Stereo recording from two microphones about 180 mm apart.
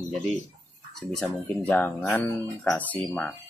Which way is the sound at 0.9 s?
Centre (ahead or behind).